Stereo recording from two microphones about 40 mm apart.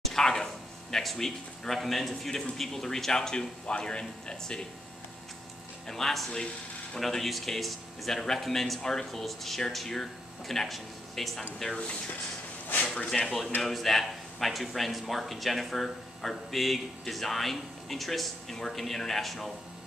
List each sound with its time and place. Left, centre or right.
0.0 s a sound: centre
0.9 s speech: centre
5.9 s speech: centre
13.1 s speech: centre